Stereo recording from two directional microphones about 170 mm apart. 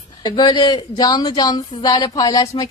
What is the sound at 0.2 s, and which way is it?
A woman's voice, 25° left (ahead or behind).